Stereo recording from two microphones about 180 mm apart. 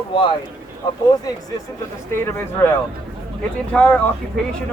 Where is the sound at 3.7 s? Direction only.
10° left (ahead or behind).